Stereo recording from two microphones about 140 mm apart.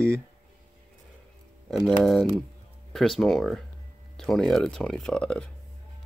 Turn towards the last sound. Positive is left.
turn(degrees=5)  # may be behind; listen again after turning